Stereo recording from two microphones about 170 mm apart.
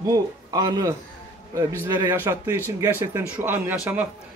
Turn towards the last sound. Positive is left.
turn(degrees=-10)  # may be behind; listen again after turning